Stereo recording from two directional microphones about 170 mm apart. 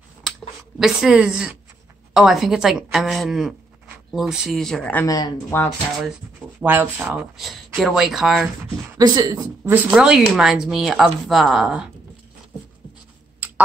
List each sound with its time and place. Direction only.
0.7 s a woman's voice: 5° right (ahead or behind)
5.0 s speech: 20° left (ahead or behind)
6.6 s a woman's voice: 10° right (ahead or behind)
8.9 s speech: 20° right (ahead or behind)
9.8 s a woman's voice: 5° right (ahead or behind)